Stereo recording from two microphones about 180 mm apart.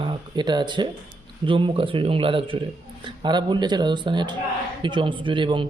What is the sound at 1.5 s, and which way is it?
A man's voice, 30° right (ahead or behind).